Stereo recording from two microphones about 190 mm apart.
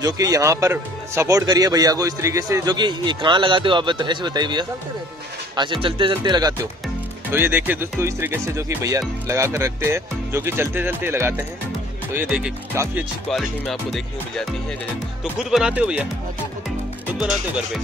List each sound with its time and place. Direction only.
0.0 s a man's voice: 20° right (ahead or behind)
7.3 s speech: 10° right (ahead or behind)